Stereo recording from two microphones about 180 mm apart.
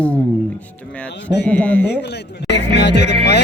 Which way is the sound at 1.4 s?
10° left (ahead or behind).